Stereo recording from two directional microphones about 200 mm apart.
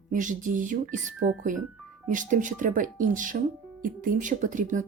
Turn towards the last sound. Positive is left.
turn(degrees=-40)  # may be behind; listen again after turning